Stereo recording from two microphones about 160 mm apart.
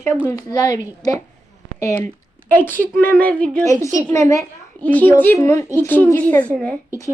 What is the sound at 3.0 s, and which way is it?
Speech, 10° left (ahead or behind).